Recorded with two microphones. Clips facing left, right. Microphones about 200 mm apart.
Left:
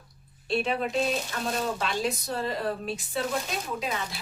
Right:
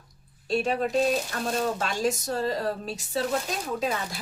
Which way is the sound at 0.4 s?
40° right (ahead or behind).